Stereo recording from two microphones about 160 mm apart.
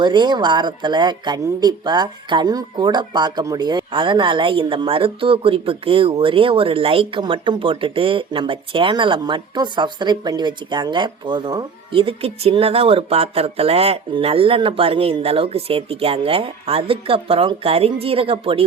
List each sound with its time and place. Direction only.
0.0 s speech: 30° right (ahead or behind)